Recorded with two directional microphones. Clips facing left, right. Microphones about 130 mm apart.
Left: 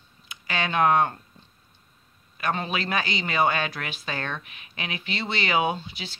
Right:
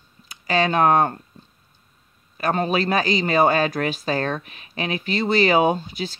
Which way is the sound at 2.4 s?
40° right (ahead or behind).